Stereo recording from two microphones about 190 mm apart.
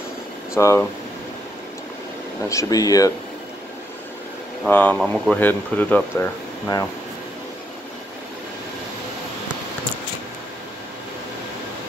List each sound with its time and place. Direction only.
0.6 s speech: 15° left (ahead or behind)
2.5 s speech: 20° left (ahead or behind)
4.6 s speech: 10° left (ahead or behind)